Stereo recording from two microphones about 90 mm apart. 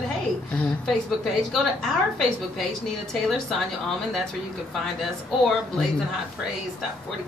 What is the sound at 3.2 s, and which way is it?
Speech, 5° left (ahead or behind).